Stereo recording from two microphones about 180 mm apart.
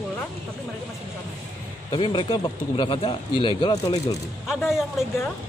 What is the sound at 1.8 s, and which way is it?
Speech, 30° left (ahead or behind).